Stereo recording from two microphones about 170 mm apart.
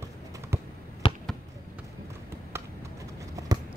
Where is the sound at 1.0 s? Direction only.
30° left (ahead or behind).